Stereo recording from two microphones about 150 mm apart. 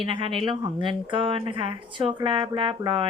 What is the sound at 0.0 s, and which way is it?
Speech, 35° right (ahead or behind).